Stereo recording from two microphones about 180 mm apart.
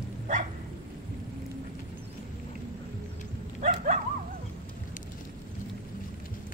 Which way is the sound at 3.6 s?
45° right (ahead or behind).